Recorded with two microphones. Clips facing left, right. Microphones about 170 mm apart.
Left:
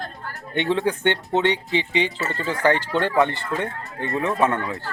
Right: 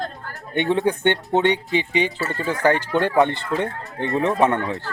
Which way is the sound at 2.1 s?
20° left (ahead or behind).